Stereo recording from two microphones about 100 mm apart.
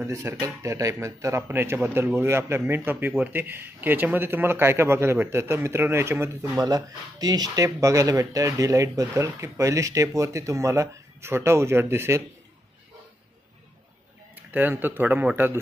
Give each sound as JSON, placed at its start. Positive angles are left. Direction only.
{"t": 0.0, "sound": "a man's voice", "side_deg": -30}
{"t": 6.6, "sound": "speech", "side_deg": -40}
{"t": 14.3, "sound": "a man's voice", "side_deg": -20}